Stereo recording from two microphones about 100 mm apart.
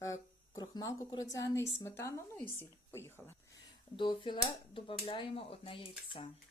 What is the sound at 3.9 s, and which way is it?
Speech, 55° left (ahead or behind).